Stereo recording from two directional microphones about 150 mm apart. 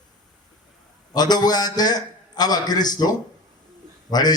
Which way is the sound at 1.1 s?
25° left (ahead or behind).